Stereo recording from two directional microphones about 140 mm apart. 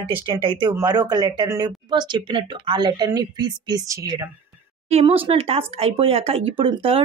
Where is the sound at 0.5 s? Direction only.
30° right (ahead or behind).